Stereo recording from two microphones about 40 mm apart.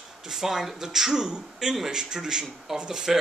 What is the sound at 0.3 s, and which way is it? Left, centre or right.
A man's voice, centre.